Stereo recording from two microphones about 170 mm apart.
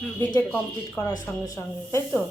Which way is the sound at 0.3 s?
15° left (ahead or behind).